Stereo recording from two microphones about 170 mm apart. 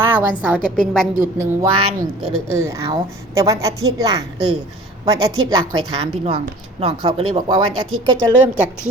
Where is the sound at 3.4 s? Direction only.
20° right (ahead or behind).